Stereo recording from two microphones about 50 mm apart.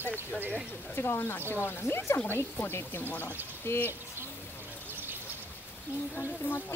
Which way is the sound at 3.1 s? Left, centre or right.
Left.